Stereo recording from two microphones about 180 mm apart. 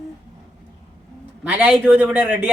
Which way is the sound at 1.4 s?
10° right (ahead or behind).